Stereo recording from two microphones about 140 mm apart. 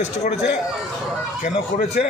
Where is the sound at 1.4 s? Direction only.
60° left (ahead or behind).